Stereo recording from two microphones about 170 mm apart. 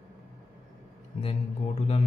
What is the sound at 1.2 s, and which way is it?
Speech, 40° left (ahead or behind).